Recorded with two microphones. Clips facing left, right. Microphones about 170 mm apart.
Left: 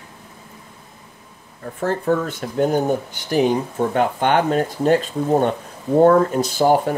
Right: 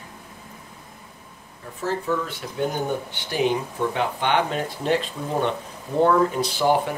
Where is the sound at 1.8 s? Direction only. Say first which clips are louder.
Left 5 dB; 55° left (ahead or behind).